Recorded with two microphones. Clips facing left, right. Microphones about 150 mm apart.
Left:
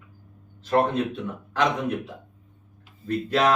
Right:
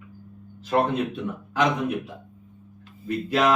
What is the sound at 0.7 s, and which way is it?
Speech, 5° right (ahead or behind).